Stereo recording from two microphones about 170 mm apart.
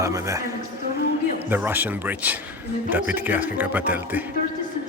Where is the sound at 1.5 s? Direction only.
10° right (ahead or behind).